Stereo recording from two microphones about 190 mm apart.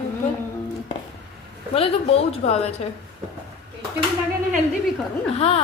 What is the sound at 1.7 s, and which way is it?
A woman's voice, 30° left (ahead or behind).